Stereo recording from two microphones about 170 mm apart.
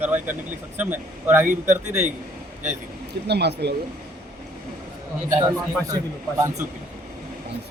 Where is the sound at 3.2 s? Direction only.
75° right (ahead or behind).